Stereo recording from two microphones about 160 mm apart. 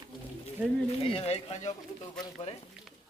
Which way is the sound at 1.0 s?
40° left (ahead or behind).